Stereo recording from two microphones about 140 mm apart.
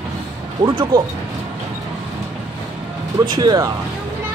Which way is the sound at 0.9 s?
90° right.